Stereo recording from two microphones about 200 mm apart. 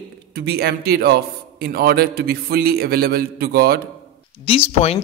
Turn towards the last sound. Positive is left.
turn(degrees=30)  # may be behind; listen again after turning